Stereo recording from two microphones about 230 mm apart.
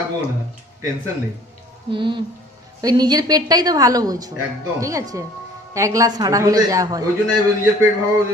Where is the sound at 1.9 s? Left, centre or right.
Right.